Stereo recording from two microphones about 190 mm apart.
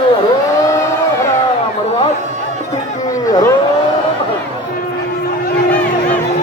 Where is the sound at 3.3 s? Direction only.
15° left (ahead or behind).